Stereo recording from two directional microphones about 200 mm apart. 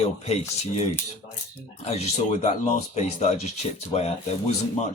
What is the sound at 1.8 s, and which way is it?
Speech, 35° left (ahead or behind).